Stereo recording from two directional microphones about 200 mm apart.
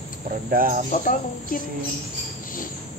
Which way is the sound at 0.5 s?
45° right (ahead or behind).